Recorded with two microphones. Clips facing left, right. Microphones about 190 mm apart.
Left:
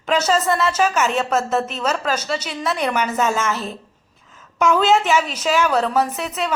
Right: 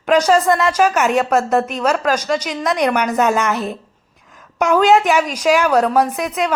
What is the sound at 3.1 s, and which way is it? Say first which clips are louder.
Speech: right 4 dB; 60° right (ahead or behind).